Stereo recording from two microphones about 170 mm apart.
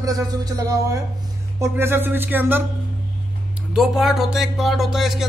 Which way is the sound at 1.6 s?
15° right (ahead or behind).